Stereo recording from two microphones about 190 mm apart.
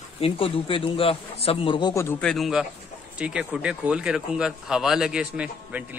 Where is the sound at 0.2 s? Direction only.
30° left (ahead or behind).